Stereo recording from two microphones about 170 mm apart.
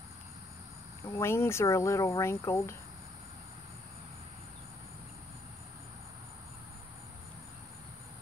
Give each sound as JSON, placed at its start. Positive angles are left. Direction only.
{"t": 1.0, "sound": "cricket", "side_deg": 15}